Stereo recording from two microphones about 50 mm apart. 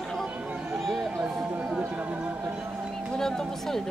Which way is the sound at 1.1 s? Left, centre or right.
Right.